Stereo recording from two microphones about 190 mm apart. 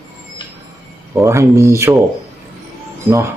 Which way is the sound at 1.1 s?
15° right (ahead or behind).